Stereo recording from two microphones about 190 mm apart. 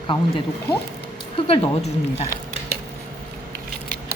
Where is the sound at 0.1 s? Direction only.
25° left (ahead or behind).